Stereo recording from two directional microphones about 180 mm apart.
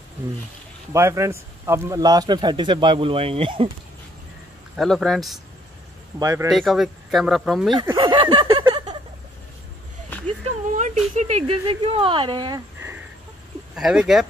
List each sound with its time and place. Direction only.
0.9 s a man's voice: 15° right (ahead or behind)
4.7 s speech: centre (ahead or behind)
6.1 s a man's voice: 20° right (ahead or behind)
6.5 s speech: centre (ahead or behind)
7.9 s a sound: 25° right (ahead or behind)
10.8 s a man's voice: 40° right (ahead or behind); by 12.9 s 20° right (ahead or behind)
13.7 s speech: 5° right (ahead or behind)